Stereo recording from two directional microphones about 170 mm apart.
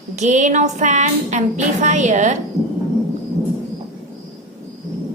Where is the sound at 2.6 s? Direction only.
20° right (ahead or behind).